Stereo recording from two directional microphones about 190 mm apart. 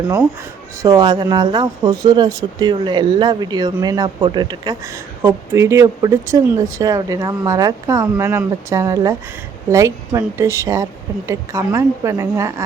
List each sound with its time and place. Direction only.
0.8 s speech: 20° right (ahead or behind)